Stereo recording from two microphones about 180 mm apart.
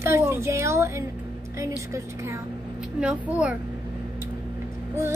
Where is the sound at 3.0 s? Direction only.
5° right (ahead or behind).